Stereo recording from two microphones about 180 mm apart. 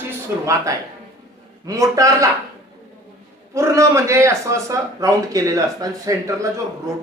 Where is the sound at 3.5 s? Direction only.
15° right (ahead or behind).